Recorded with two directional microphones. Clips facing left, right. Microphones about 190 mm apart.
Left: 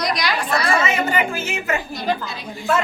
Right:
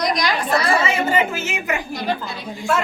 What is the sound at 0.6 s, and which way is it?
A woman's voice, 30° right (ahead or behind).